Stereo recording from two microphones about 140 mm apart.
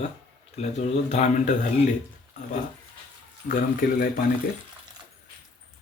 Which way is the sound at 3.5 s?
85° left.